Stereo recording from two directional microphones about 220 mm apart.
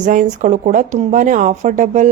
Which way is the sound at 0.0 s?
35° right (ahead or behind).